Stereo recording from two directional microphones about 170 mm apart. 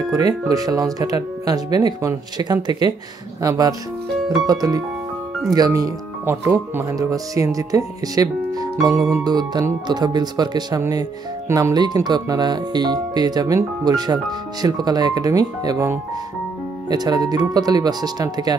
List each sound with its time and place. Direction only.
0.1 s speech: 20° right (ahead or behind)
8.9 s speech: 5° right (ahead or behind)
9.2 s speech: 25° right (ahead or behind)